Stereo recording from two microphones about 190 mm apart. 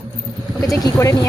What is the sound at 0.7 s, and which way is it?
Speech, 15° left (ahead or behind).